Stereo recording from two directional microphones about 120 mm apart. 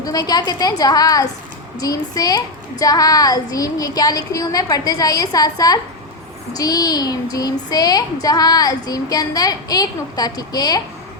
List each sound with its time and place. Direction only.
0.0 s a child's voice: 30° left (ahead or behind)